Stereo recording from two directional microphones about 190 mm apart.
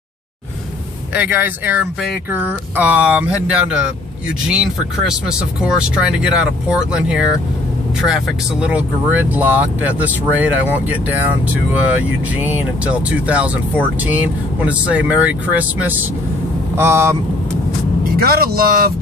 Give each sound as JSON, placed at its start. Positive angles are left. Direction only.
{"t": 1.1, "sound": "speech", "side_deg": -10}
{"t": 18.2, "sound": "speech", "side_deg": -55}